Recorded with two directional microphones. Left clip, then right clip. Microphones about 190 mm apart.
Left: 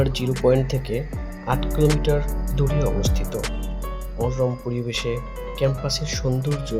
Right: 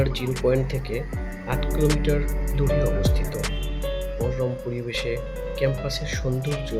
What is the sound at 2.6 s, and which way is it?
Speech, 15° left (ahead or behind).